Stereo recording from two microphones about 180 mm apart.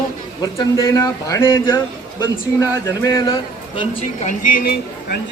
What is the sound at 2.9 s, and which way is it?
Speech, 20° left (ahead or behind).